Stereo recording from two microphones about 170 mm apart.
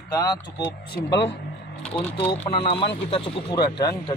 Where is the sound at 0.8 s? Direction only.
80° left.